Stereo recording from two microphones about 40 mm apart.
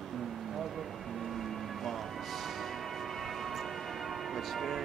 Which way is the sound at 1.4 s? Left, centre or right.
Centre.